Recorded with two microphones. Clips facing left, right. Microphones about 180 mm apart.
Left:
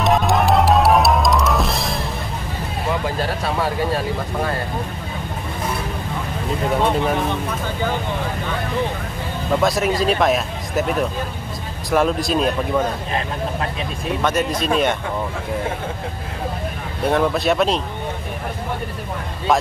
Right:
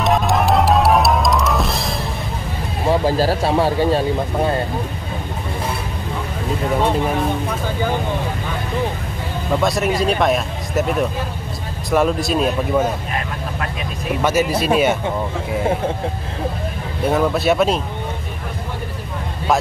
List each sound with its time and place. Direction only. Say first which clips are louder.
0.0 s music: even; centre (ahead or behind)
2.9 s speech: right 7 dB; 30° right (ahead or behind)
9.6 s speech: even; centre (ahead or behind)
14.2 s speech: right 3 dB; 10° right (ahead or behind)
17.1 s speech: right 1 dB; centre (ahead or behind)